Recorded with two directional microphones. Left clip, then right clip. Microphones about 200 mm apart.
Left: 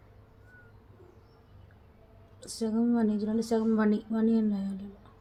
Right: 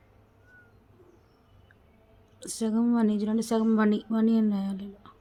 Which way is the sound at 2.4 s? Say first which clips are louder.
Right 2 dB; 30° right (ahead or behind).